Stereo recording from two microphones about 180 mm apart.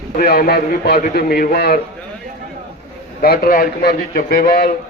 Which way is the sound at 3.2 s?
55° left (ahead or behind).